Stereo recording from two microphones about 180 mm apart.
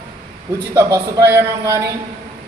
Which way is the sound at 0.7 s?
15° right (ahead or behind).